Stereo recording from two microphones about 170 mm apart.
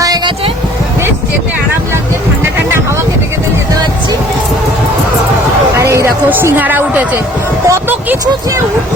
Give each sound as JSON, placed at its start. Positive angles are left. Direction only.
{"t": 0.0, "sound": "vehicle", "side_deg": -25}
{"t": 5.7, "sound": "a sound", "side_deg": -15}
{"t": 7.7, "sound": "speech", "side_deg": -20}